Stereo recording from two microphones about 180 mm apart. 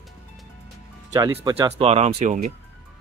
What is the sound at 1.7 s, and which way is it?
Speech, 35° right (ahead or behind).